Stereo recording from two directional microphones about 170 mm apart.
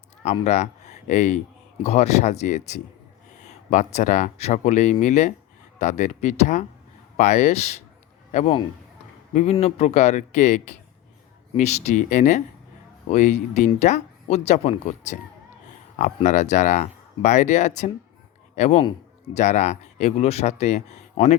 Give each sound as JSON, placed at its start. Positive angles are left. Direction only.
{"t": 0.2, "sound": "a man's voice", "side_deg": 45}